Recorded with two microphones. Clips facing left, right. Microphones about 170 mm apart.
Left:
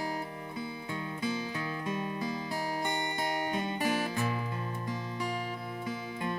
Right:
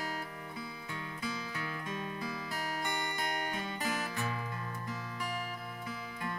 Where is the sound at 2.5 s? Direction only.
30° left (ahead or behind).